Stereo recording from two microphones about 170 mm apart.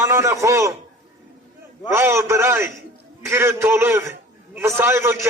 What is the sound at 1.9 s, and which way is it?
A man's voice, 15° right (ahead or behind).